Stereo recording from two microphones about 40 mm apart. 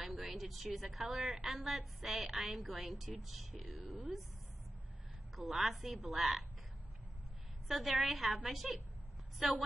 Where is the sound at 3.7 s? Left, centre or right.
Right.